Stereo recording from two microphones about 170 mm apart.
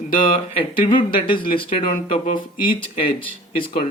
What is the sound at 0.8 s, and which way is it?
Speech, 30° left (ahead or behind).